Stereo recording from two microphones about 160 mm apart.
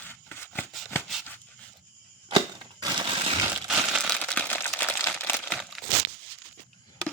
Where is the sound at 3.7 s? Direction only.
Centre (ahead or behind).